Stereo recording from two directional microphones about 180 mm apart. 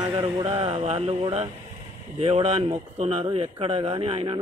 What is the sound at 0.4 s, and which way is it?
A man's voice, 35° right (ahead or behind).